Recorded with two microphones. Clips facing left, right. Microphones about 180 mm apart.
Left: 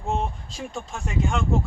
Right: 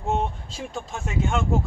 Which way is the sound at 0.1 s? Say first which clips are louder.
Right 2 dB; centre (ahead or behind).